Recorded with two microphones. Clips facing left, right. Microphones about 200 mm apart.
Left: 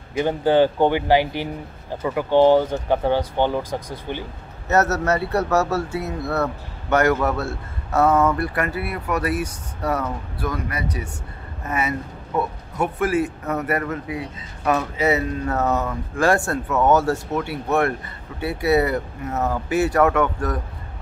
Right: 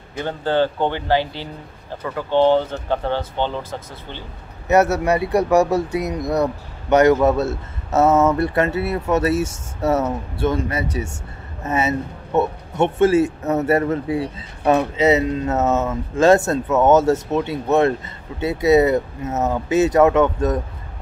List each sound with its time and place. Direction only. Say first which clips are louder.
0.2 s speech: left 3 dB; 15° left (ahead or behind)
4.6 s a man's voice: right 3 dB; 15° right (ahead or behind)